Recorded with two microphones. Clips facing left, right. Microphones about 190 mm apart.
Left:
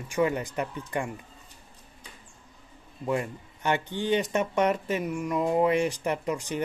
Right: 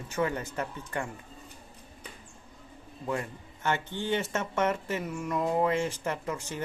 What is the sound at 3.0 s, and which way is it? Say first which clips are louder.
Speech: left 4 dB; 15° left (ahead or behind).